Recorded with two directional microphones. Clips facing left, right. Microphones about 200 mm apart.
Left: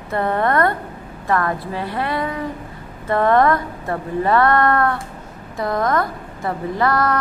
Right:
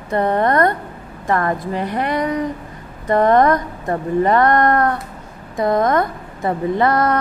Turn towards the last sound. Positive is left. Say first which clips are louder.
# right 3 dB
turn(degrees=-20)  # may be behind; listen again after turning